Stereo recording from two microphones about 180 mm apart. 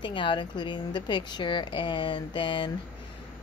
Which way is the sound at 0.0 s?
25° left (ahead or behind).